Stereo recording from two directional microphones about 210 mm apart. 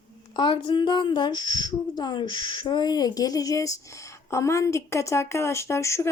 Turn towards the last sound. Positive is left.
turn(degrees=15)  # may be behind; listen again after turning